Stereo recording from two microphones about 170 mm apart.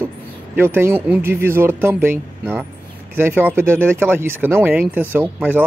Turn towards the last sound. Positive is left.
turn(degrees=-10)  # may be behind; listen again after turning